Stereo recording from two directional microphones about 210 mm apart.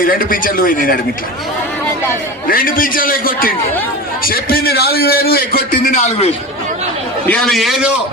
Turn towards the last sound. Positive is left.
turn(degrees=0)  # may be behind; listen again after turning